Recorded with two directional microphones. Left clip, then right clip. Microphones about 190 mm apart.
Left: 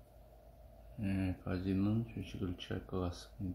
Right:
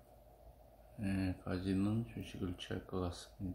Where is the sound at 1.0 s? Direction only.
5° left (ahead or behind).